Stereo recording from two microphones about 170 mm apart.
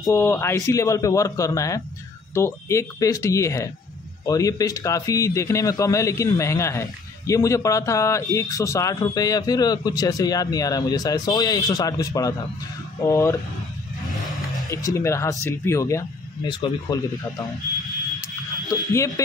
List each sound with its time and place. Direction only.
0.0 s a man's voice: 15° left (ahead or behind)
14.7 s a man's voice: 20° left (ahead or behind)
18.7 s a man's voice: 20° left (ahead or behind)